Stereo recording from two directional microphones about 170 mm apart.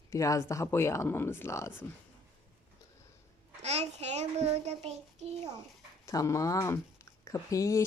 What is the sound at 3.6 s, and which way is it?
A child's voice, 40° right (ahead or behind).